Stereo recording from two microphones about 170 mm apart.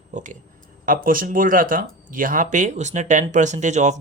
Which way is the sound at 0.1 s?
50° right (ahead or behind).